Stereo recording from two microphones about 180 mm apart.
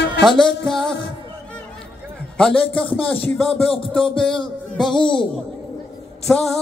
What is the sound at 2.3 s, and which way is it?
A man's voice, 5° left (ahead or behind).